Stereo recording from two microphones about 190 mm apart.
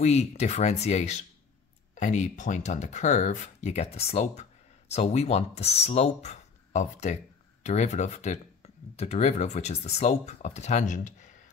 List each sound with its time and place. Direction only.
0.0 s speech: 35° left (ahead or behind)